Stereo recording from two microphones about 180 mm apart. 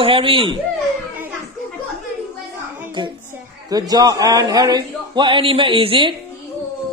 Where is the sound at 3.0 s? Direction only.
25° right (ahead or behind).